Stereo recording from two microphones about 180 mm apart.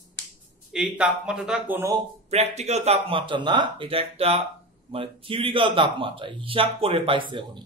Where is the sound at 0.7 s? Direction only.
5° right (ahead or behind).